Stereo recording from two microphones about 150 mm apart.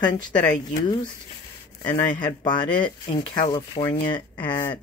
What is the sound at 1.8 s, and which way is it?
Speech, 60° left (ahead or behind).